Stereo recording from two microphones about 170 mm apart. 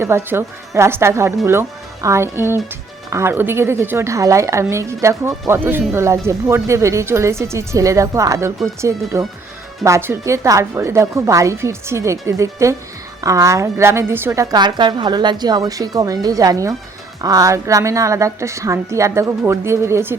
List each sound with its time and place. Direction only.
0.0 s a woman's voice: 15° right (ahead or behind)